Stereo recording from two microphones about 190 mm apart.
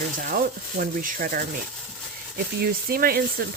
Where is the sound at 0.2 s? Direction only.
45° right (ahead or behind).